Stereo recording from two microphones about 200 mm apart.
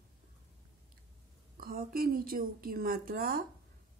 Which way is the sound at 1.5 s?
45° right (ahead or behind).